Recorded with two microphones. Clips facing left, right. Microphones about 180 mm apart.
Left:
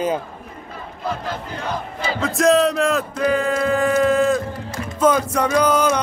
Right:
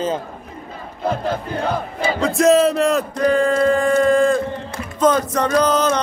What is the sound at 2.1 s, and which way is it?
A man's voice, centre (ahead or behind).